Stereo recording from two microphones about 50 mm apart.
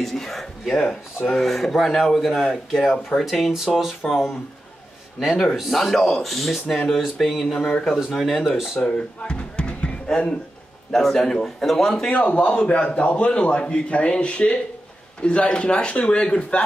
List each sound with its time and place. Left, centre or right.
0.0 s speech: centre
8.8 s speech: left
10.9 s speech: centre
12.1 s a man's voice: left